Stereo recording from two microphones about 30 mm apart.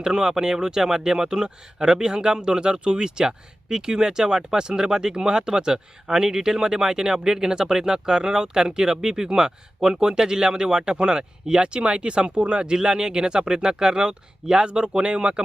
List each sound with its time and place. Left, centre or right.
0.0 s speech: right